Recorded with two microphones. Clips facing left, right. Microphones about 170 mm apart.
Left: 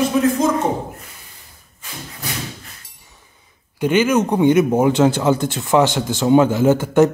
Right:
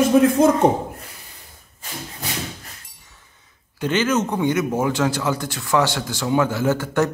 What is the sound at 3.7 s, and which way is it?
Speech, 10° left (ahead or behind).